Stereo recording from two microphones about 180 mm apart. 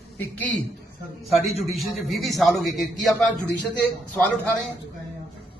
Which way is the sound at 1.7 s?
Centre (ahead or behind).